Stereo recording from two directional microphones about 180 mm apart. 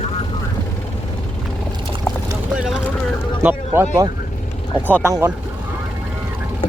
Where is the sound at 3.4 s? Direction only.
15° right (ahead or behind).